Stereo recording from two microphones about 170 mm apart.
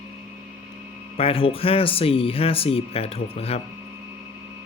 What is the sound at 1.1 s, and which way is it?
Speech, 35° left (ahead or behind).